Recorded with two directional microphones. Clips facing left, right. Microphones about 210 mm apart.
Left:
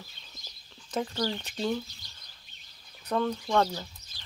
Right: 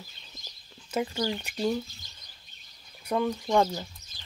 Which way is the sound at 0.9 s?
10° right (ahead or behind).